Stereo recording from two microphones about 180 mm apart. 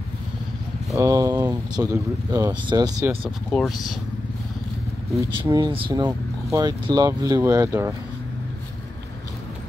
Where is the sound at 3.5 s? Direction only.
Centre (ahead or behind).